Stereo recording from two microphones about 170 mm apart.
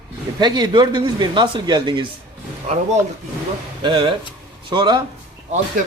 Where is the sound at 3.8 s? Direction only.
30° right (ahead or behind).